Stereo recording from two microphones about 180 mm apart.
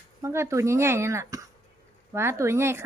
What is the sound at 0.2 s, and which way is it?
Speech, 15° right (ahead or behind).